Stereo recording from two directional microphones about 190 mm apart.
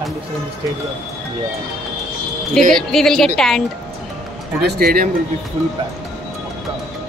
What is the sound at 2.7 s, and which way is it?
Speech, centre (ahead or behind).